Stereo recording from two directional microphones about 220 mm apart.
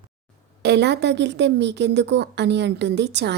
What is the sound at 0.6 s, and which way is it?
A woman's voice, 50° right (ahead or behind).